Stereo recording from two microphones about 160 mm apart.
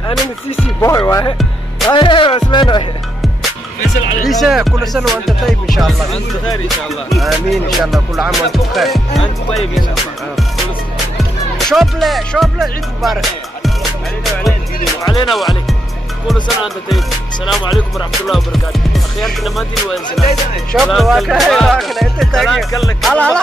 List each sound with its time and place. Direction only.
0.7 s speech: 20° left (ahead or behind)
2.0 s music: 30° left (ahead or behind)
4.3 s music: centre (ahead or behind)
7.1 s music: centre (ahead or behind)
11.1 s speech: centre (ahead or behind)
15.3 s music: centre (ahead or behind)